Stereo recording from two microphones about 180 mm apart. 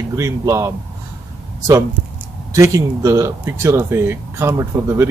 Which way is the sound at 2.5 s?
15° right (ahead or behind).